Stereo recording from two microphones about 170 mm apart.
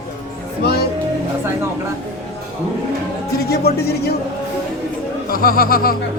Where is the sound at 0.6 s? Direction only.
70° left (ahead or behind).